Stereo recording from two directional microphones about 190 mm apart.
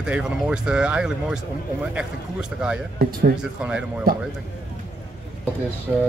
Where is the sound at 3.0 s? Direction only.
55° right (ahead or behind).